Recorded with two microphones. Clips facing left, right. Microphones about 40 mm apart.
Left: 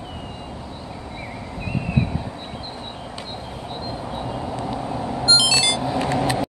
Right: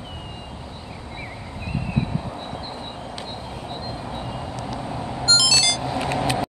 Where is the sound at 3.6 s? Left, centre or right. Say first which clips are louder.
Left 3 dB; centre.